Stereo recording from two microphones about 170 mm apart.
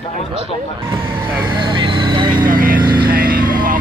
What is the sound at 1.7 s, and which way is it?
Vehicle, 30° right (ahead or behind).